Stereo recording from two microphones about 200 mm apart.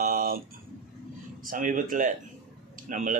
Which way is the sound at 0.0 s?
45° right (ahead or behind).